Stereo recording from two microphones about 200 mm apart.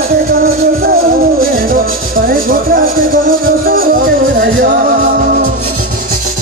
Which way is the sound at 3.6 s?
45° right (ahead or behind).